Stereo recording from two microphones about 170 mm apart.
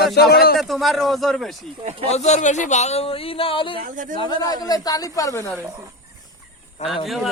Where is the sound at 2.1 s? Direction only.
40° left (ahead or behind); by 5.5 s 20° left (ahead or behind).